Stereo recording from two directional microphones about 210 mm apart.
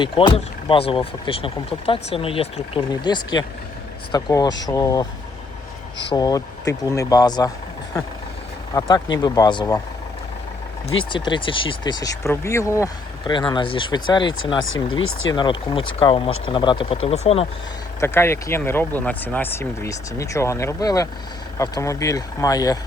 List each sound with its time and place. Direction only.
0.0 s speech: 25° left (ahead or behind)
6.1 s speech: 15° left (ahead or behind)
8.7 s speech: 15° left (ahead or behind)
11.1 s speech: 25° left (ahead or behind)
18.0 s speech: 10° left (ahead or behind)